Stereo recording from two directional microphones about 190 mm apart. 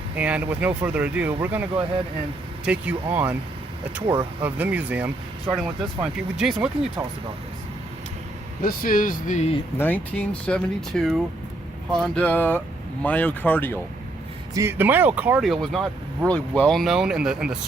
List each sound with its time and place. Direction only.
0.2 s speech: 5° right (ahead or behind)
2.6 s speech: 10° right (ahead or behind)
4.0 s speech: 25° right (ahead or behind)
4.4 s speech: 10° right (ahead or behind)
8.6 s speech: 45° left (ahead or behind)
9.7 s speech: 10° left (ahead or behind)
14.5 s speech: 15° right (ahead or behind)